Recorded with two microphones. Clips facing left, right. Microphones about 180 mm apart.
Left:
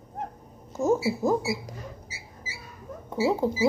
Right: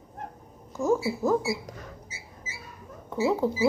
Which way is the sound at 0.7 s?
20° left (ahead or behind).